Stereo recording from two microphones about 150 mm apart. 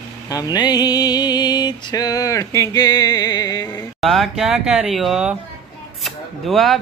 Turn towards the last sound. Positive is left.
turn(degrees=0)  # may be behind; listen again after turning